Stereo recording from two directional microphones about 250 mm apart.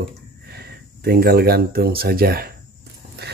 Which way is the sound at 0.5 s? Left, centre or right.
Right.